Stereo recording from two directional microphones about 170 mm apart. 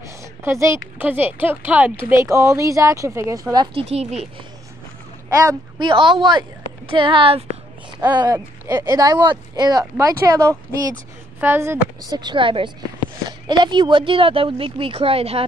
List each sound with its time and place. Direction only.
0.0 s a woman's voice: 15° right (ahead or behind)
3.9 s speech: 40° right (ahead or behind)
5.3 s speech: 20° right (ahead or behind); by 15.4 s 35° right (ahead or behind)